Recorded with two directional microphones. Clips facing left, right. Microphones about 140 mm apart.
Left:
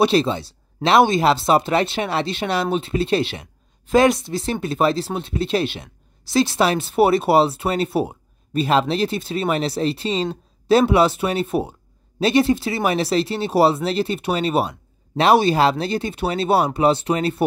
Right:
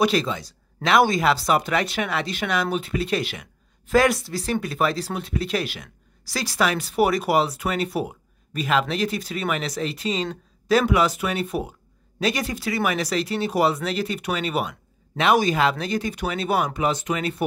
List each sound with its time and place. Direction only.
0.0 s speech: 30° left (ahead or behind)